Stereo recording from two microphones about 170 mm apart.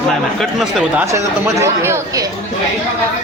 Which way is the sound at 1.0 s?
15° right (ahead or behind).